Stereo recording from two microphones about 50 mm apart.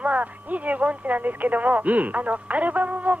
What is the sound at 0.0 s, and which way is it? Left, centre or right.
Speech, right.